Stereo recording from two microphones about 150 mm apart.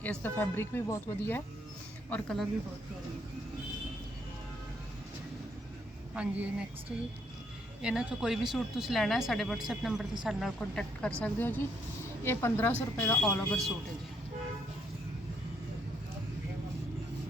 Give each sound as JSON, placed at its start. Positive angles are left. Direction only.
{"t": 0.0, "sound": "speech", "side_deg": 10}
{"t": 6.1, "sound": "a woman's voice", "side_deg": -10}
{"t": 7.8, "sound": "speech", "side_deg": -5}